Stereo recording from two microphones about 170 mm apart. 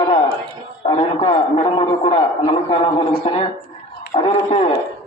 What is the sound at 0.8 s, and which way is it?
A man's voice, 35° left (ahead or behind).